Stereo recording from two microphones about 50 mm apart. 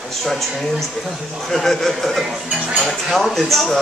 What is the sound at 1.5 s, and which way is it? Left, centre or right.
Speech, centre.